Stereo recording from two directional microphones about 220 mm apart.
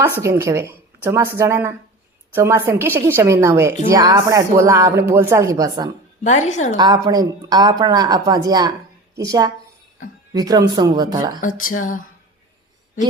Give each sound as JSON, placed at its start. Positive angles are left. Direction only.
{"t": 0.2, "sound": "a woman's voice", "side_deg": -15}
{"t": 6.2, "sound": "speech", "side_deg": 30}
{"t": 6.7, "sound": "a woman's voice", "side_deg": -20}
{"t": 11.3, "sound": "speech", "side_deg": 40}